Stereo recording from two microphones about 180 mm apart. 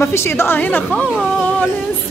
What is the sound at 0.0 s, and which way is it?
A woman's voice, 15° left (ahead or behind).